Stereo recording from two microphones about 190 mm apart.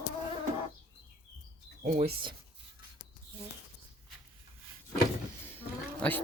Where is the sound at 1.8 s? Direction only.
35° right (ahead or behind).